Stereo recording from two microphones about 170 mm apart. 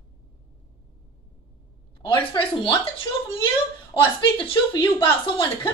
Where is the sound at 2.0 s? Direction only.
30° left (ahead or behind).